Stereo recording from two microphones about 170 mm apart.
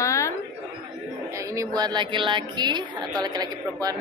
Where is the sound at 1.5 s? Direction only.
20° right (ahead or behind).